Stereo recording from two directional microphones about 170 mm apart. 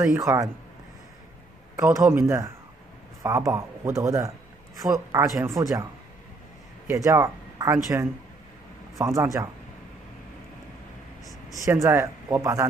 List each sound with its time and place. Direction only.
0.2 s speech: 20° right (ahead or behind)
1.8 s speech: 15° right (ahead or behind)
6.9 s speech: 20° right (ahead or behind)
11.5 s speech: 20° right (ahead or behind)